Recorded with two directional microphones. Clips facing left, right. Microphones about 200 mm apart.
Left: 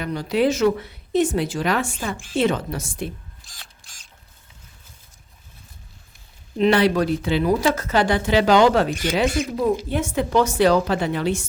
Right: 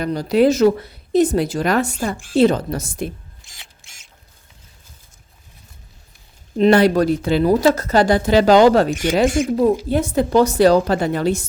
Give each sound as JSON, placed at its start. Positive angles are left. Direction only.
{"t": 0.0, "sound": "a woman's voice", "side_deg": -40}
{"t": 3.6, "sound": "mechanisms", "side_deg": -25}
{"t": 6.6, "sound": "a woman's voice", "side_deg": -45}